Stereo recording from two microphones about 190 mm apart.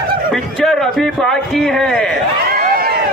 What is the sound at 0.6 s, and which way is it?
A man's voice, centre (ahead or behind).